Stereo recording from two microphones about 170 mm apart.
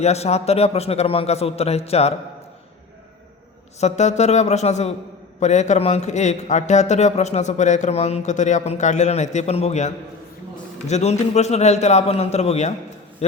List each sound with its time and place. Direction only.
0.0 s a man's voice: 40° left (ahead or behind)
3.8 s a man's voice: 40° left (ahead or behind)